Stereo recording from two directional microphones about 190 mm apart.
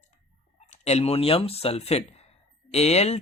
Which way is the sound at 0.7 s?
35° left (ahead or behind).